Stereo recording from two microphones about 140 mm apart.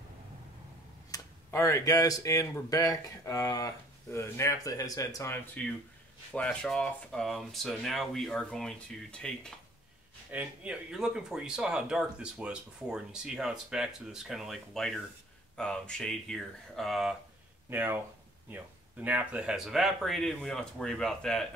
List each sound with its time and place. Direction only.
1.1 s speech: 20° left (ahead or behind)
6.3 s speech: 5° left (ahead or behind)
10.3 s speech: 10° right (ahead or behind)
17.6 s speech: 15° right (ahead or behind); by 21.5 s 5° left (ahead or behind)